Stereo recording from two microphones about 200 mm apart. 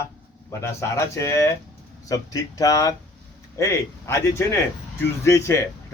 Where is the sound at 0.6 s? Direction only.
15° left (ahead or behind).